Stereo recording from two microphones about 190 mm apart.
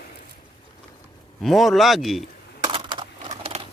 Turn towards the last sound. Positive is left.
turn(degrees=-25)  # may be behind; listen again after turning